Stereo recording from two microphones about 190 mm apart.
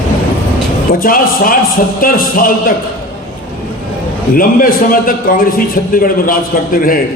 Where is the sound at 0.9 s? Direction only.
50° left (ahead or behind).